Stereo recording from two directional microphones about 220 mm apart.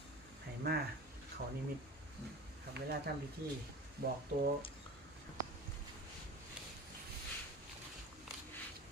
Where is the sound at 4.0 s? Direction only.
45° right (ahead or behind).